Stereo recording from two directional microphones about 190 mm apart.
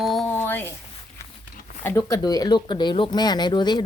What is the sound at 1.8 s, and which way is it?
Speech, 20° left (ahead or behind).